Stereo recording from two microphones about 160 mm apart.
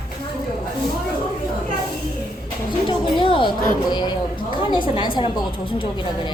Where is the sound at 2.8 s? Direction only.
30° left (ahead or behind).